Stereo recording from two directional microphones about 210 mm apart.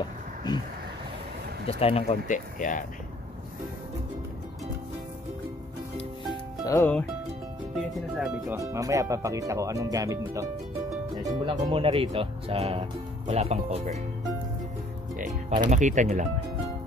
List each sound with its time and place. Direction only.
0.5 s speech: 20° left (ahead or behind)
1.7 s speech: 25° left (ahead or behind)
6.6 s speech: 15° left (ahead or behind)
7.7 s speech: centre (ahead or behind)
8.5 s speech: 15° right (ahead or behind); by 13.9 s 30° right (ahead or behind)
15.7 s speech: 35° right (ahead or behind)